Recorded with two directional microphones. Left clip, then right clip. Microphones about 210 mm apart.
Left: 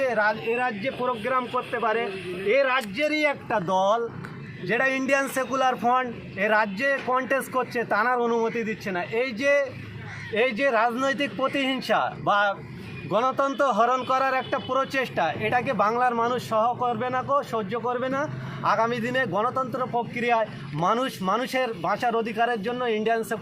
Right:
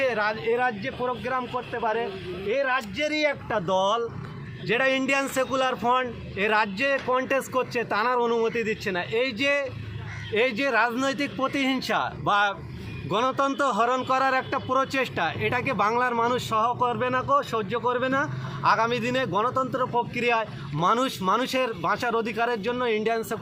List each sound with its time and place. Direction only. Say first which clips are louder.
0.1 s speech: left 2 dB; 15° left (ahead or behind)
0.5 s a man's voice: right 1 dB; 40° left (ahead or behind)
3.7 s a man's voice: left 1 dB; 10° right (ahead or behind)
5.2 s speech: right 1 dB; 5° right (ahead or behind)
5.9 s speech: even; 25° right (ahead or behind)